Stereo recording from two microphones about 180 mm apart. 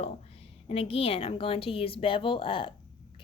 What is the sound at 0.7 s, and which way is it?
A woman's voice, 30° left (ahead or behind).